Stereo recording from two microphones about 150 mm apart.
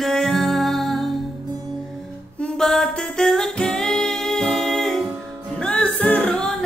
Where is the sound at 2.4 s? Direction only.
5° left (ahead or behind).